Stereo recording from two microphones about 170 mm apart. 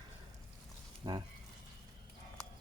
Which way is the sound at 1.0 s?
20° right (ahead or behind).